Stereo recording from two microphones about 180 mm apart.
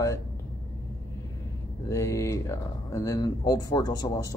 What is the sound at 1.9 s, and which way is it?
Speech, 15° left (ahead or behind).